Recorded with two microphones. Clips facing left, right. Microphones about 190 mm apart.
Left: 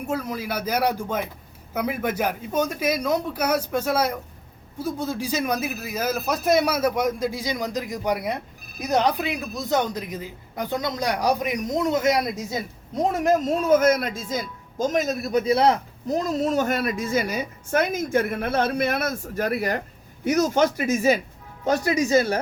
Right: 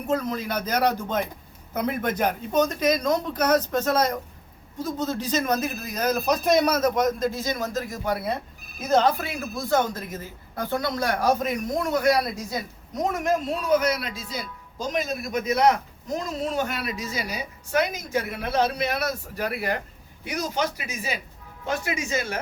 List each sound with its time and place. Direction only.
0.1 s speech: 10° left (ahead or behind)
13.0 s a man's voice: 40° left (ahead or behind)